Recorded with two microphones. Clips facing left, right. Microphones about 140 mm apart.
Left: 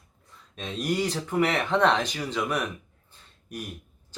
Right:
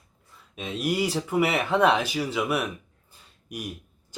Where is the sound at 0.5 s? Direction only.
5° right (ahead or behind).